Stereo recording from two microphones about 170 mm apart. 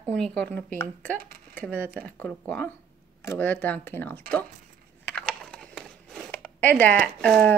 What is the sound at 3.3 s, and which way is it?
Speech, 10° left (ahead or behind).